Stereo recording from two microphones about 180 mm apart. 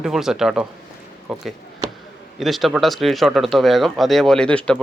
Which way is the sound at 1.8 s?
25° right (ahead or behind).